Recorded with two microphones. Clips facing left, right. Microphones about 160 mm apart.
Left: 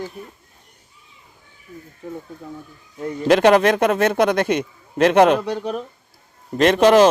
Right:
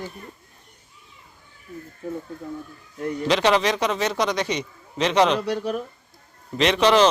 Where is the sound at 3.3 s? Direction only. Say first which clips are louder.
Left 7 dB; 50° left (ahead or behind).